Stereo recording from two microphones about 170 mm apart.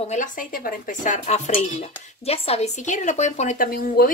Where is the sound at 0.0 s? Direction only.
45° left (ahead or behind).